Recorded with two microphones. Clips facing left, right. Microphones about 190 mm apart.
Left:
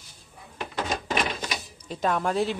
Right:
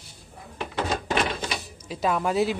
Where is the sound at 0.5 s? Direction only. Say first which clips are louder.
Right 2 dB; 25° right (ahead or behind).